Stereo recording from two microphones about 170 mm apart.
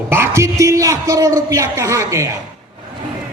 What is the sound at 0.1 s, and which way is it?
A man's voice, 15° right (ahead or behind).